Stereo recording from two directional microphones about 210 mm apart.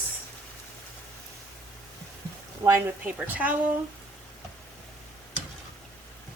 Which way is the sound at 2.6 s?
10° right (ahead or behind).